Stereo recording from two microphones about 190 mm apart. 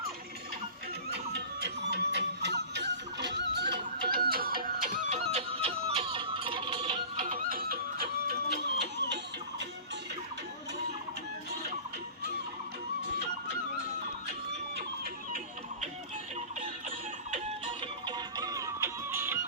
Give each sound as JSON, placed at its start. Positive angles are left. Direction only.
{"t": 1.1, "sound": "music", "side_deg": -60}
{"t": 5.3, "sound": "music", "side_deg": -30}
{"t": 7.3, "sound": "music", "side_deg": -50}
{"t": 17.3, "sound": "music", "side_deg": -25}